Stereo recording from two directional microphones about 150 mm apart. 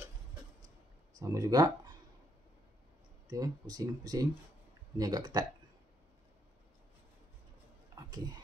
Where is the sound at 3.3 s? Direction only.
25° right (ahead or behind).